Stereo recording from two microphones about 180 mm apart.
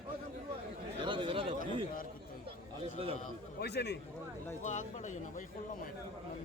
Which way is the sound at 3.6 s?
65° left (ahead or behind).